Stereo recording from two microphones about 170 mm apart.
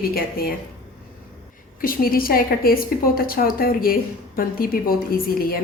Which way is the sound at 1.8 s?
55° left (ahead or behind).